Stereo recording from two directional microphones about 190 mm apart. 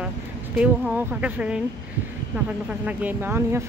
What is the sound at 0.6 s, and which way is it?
Speech, 5° right (ahead or behind).